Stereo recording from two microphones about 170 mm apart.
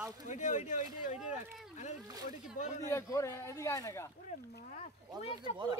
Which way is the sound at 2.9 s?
15° left (ahead or behind).